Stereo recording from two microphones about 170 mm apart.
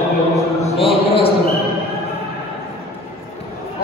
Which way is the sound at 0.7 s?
30° left (ahead or behind).